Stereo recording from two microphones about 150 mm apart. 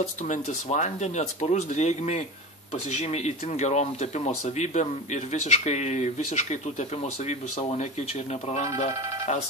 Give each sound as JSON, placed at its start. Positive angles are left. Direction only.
{"t": 0.3, "sound": "speech", "side_deg": 55}